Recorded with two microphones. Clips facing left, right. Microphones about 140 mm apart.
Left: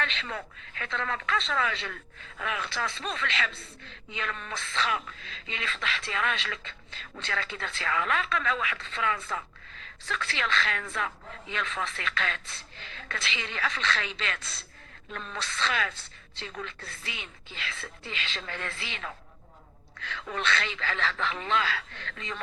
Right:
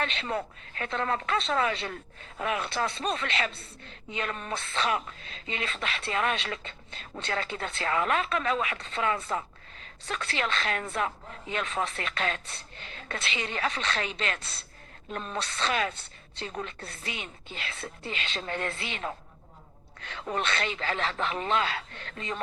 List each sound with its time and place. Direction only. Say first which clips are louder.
0.0 s speech: right 4 dB; 40° right (ahead or behind)
5.5 s speech: right 1 dB; 40° right (ahead or behind)